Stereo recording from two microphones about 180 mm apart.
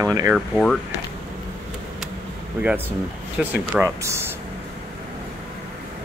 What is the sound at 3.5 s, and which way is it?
Speech, 10° right (ahead or behind).